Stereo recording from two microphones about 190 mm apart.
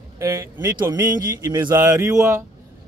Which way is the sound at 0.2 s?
15° right (ahead or behind).